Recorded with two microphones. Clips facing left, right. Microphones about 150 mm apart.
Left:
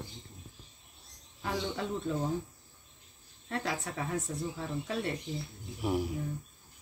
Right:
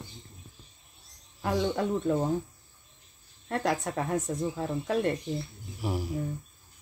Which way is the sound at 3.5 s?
55° right (ahead or behind).